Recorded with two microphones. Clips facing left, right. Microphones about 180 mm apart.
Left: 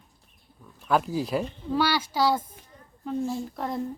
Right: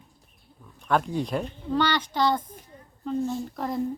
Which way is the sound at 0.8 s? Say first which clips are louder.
Even; 5° left (ahead or behind).